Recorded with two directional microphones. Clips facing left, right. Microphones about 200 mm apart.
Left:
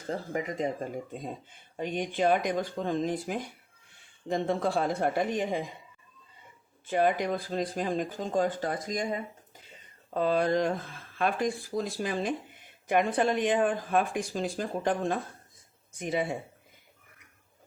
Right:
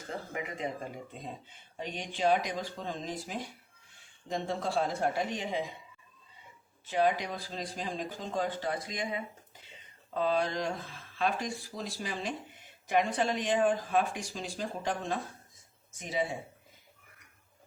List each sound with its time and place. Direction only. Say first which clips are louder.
0.1 s speech: left 6 dB; 40° left (ahead or behind)
6.8 s speech: left 3 dB; 50° left (ahead or behind)